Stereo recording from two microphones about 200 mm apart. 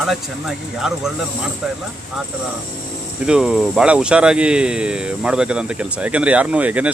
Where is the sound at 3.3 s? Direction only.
5° right (ahead or behind).